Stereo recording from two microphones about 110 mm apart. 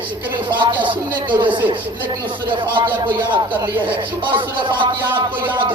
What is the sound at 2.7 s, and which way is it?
A man's voice, 45° right (ahead or behind).